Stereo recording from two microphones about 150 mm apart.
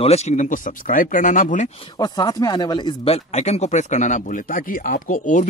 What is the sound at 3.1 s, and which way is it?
Speech, 45° left (ahead or behind).